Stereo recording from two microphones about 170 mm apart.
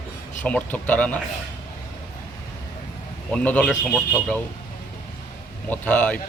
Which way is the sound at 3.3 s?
5° left (ahead or behind).